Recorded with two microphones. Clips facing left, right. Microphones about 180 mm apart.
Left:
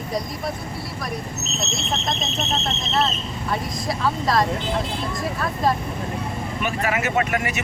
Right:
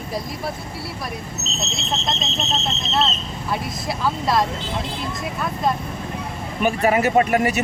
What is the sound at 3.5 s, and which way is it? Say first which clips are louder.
Speech: even; centre (ahead or behind).